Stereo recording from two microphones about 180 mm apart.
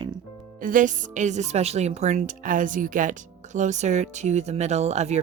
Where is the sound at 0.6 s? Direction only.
45° right (ahead or behind).